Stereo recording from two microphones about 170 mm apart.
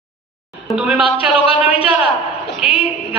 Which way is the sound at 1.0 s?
35° left (ahead or behind).